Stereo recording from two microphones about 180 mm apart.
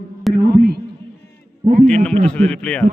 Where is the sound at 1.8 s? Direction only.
5° left (ahead or behind).